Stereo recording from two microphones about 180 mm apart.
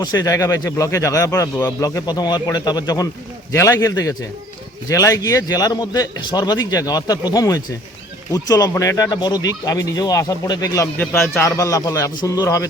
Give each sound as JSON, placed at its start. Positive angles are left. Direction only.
{"t": 0.0, "sound": "a man's voice", "side_deg": 20}